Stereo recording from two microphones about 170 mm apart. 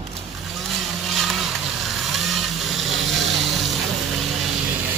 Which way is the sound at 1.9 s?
Centre (ahead or behind).